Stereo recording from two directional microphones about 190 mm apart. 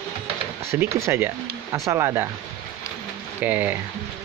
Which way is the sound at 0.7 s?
15° right (ahead or behind).